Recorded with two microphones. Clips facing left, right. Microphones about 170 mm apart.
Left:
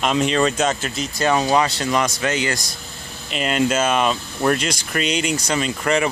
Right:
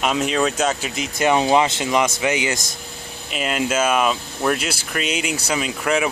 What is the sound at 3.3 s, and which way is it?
Speech, 5° right (ahead or behind).